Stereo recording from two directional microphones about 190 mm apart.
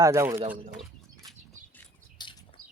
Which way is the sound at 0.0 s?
20° right (ahead or behind).